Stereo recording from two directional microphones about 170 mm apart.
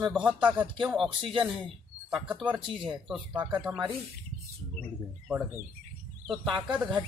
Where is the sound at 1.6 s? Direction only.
5° right (ahead or behind).